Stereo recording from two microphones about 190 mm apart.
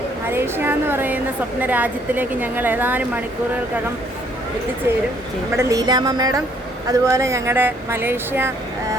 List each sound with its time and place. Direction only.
0.3 s speech: 10° right (ahead or behind)
5.5 s speech: 20° right (ahead or behind)